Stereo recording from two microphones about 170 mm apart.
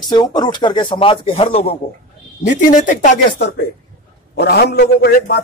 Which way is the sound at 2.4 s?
50° left (ahead or behind).